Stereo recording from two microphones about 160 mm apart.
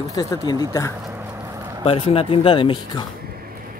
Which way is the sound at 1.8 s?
35° left (ahead or behind).